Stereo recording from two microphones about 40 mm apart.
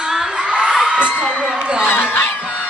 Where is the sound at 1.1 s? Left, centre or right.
Centre.